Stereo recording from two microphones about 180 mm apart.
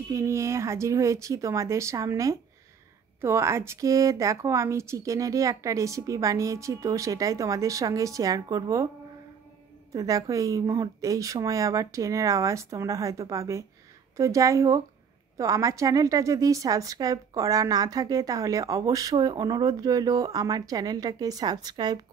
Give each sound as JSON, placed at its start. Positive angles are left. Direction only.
{"t": 0.1, "sound": "a woman's voice", "side_deg": -15}
{"t": 9.9, "sound": "a woman's voice", "side_deg": -20}